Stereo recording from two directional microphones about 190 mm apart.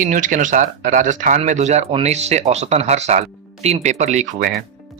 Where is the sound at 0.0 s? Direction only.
45° right (ahead or behind).